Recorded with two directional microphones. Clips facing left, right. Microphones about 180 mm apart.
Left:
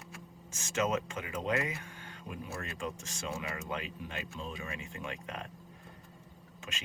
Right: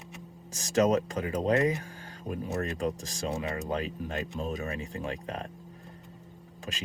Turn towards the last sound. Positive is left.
turn(degrees=-35)  # may be behind; listen again after turning